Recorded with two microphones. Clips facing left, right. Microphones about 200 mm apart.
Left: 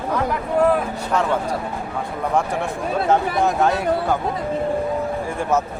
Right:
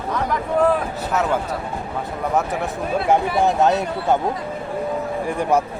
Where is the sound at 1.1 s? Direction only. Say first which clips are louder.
Left 1 dB; 5° right (ahead or behind).